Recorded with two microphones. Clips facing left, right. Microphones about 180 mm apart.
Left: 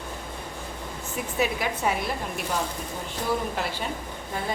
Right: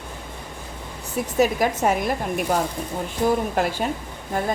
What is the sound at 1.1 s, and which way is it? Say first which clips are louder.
A woman's voice: right 7 dB; 40° right (ahead or behind).